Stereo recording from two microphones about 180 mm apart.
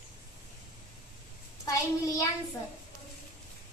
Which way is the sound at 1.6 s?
20° left (ahead or behind).